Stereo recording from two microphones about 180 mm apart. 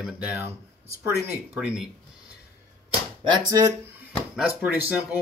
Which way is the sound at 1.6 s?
Centre (ahead or behind).